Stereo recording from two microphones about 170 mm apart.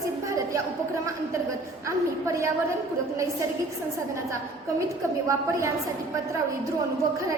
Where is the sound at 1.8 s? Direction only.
20° right (ahead or behind).